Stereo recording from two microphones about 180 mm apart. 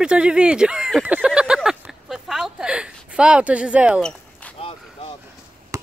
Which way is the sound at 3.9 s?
5° left (ahead or behind).